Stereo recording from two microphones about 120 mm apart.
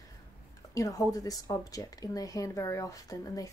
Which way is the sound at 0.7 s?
25° left (ahead or behind).